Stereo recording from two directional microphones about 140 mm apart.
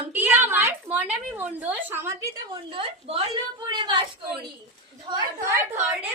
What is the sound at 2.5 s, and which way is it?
A woman's voice, 40° right (ahead or behind).